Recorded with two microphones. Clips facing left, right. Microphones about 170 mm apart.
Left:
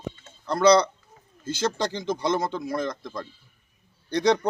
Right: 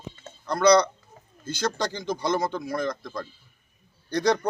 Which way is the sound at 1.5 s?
Centre (ahead or behind).